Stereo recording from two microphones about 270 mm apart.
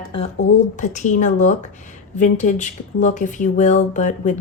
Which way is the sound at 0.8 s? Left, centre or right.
Left.